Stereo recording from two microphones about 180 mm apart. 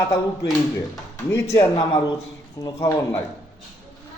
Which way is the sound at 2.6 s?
20° left (ahead or behind).